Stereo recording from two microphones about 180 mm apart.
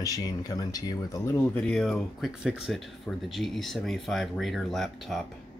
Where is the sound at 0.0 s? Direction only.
20° left (ahead or behind); by 5.2 s centre (ahead or behind).